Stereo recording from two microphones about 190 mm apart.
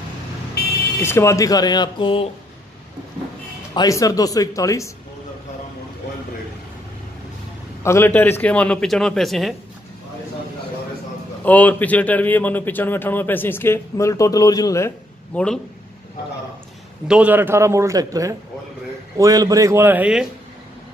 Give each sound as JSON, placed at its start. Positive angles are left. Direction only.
{"t": 0.6, "sound": "vehicle", "side_deg": 60}
{"t": 1.0, "sound": "speech", "side_deg": 15}
{"t": 3.7, "sound": "speech", "side_deg": 20}
{"t": 7.8, "sound": "a man's voice", "side_deg": 15}
{"t": 11.4, "sound": "a man's voice", "side_deg": 10}
{"t": 15.3, "sound": "a man's voice", "side_deg": 5}
{"t": 17.1, "sound": "a man's voice", "side_deg": -10}